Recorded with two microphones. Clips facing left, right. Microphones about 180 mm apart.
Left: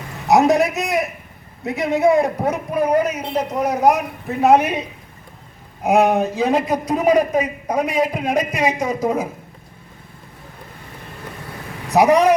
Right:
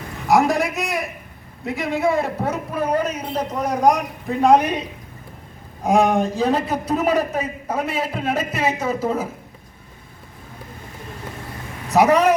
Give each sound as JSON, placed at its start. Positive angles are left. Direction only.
{"t": 0.3, "sound": "a man's voice", "side_deg": 20}
{"t": 11.9, "sound": "a man's voice", "side_deg": 10}